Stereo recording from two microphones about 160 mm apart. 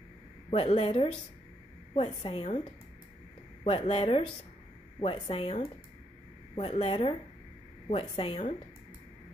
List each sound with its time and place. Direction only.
0.5 s a woman's voice: 40° left (ahead or behind)
3.6 s a woman's voice: 40° left (ahead or behind)